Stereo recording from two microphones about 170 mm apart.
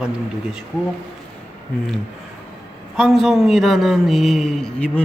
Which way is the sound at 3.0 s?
5° right (ahead or behind).